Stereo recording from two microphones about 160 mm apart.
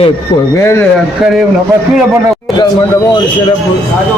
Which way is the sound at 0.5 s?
15° left (ahead or behind).